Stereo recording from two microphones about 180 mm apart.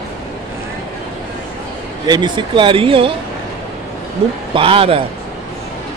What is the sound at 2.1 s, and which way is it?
Speech, 25° right (ahead or behind).